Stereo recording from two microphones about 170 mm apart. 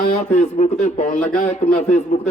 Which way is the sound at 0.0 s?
50° left (ahead or behind).